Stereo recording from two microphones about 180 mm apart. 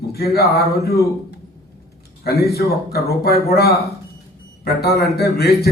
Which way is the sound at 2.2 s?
60° left (ahead or behind).